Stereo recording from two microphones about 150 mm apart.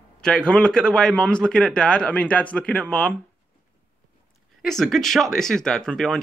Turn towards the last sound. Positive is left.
turn(degrees=5)  # may be behind; listen again after turning